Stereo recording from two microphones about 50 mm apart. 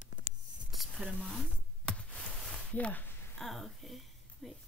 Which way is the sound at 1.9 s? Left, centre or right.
Left.